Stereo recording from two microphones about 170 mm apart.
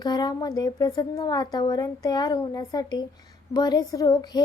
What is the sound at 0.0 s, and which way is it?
A woman's voice, 25° left (ahead or behind).